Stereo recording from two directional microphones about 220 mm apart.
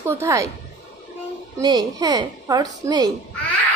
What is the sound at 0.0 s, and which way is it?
Speech, 15° right (ahead or behind).